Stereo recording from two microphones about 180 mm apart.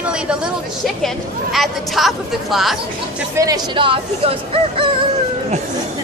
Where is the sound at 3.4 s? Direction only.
20° right (ahead or behind).